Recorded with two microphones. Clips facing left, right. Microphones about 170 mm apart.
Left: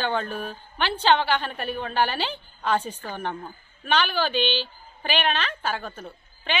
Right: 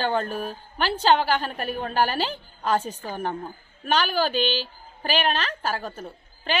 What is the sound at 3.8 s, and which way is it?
A woman's voice, 40° right (ahead or behind).